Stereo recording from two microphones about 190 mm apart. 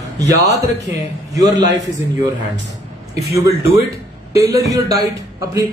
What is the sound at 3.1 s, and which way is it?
A man's voice, 15° right (ahead or behind).